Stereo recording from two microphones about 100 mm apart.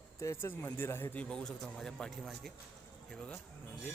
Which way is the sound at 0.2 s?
30° left (ahead or behind).